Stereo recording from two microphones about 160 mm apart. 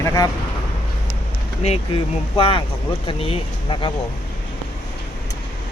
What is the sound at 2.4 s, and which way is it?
Speech, 35° left (ahead or behind).